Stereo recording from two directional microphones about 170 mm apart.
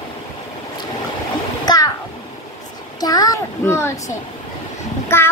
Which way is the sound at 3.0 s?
20° left (ahead or behind).